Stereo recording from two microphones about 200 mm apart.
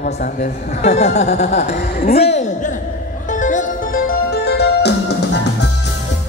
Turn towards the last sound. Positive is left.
turn(degrees=60)  # may be behind; listen again after turning